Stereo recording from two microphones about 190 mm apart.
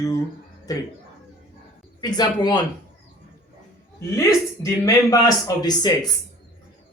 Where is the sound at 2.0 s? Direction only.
20° left (ahead or behind).